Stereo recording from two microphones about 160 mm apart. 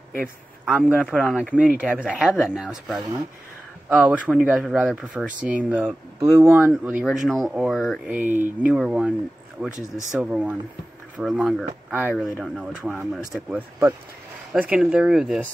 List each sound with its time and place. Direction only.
0.7 s speech: 10° right (ahead or behind)
0.9 s speech: 10° left (ahead or behind)
1.5 s speech: 10° right (ahead or behind)
6.6 s speech: 5° right (ahead or behind)
8.2 s speech: 10° right (ahead or behind)